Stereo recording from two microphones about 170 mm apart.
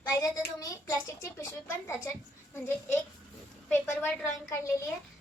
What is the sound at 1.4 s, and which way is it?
A child's voice, 15° left (ahead or behind).